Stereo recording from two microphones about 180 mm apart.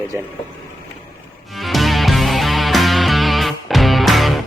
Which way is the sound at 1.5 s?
Centre (ahead or behind).